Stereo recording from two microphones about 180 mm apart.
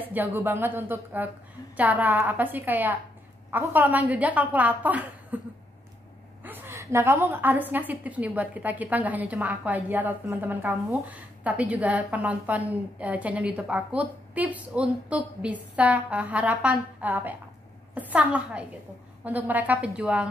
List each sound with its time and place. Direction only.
0.0 s a woman's voice: 10° right (ahead or behind)
6.4 s a woman's voice: 10° right (ahead or behind)